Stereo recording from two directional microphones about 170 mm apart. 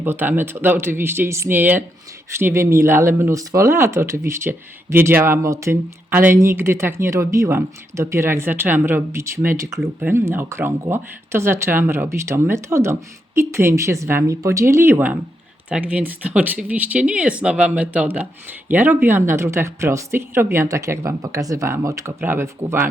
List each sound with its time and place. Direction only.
0.0 s speech: 10° right (ahead or behind)
9.7 s speech: centre (ahead or behind)
10.1 s speech: 15° right (ahead or behind)